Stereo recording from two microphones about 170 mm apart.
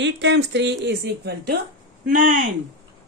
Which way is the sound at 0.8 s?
80° right.